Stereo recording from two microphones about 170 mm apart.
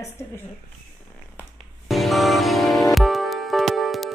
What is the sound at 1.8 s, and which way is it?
Music, centre (ahead or behind).